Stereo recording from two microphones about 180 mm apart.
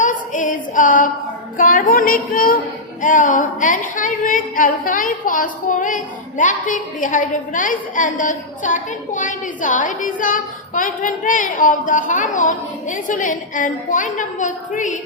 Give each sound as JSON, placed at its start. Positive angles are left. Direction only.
{"t": 0.0, "sound": "female singing", "side_deg": 45}
{"t": 1.5, "sound": "a woman's voice", "side_deg": 50}